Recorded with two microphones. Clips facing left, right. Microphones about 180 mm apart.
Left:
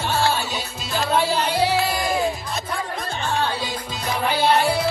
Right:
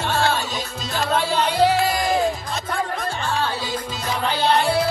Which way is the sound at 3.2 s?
15° left (ahead or behind).